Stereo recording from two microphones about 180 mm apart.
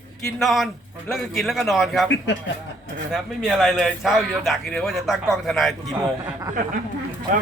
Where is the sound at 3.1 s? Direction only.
Centre (ahead or behind).